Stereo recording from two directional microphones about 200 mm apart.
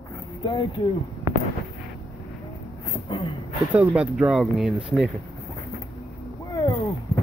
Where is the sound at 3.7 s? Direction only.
5° right (ahead or behind).